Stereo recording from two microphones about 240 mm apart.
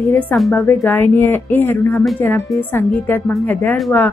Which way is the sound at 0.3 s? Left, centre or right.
Centre.